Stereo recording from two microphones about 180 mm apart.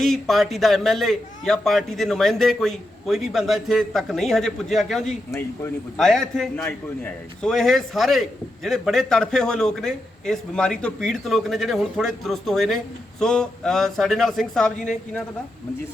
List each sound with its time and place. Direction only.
0.0 s a man's voice: centre (ahead or behind)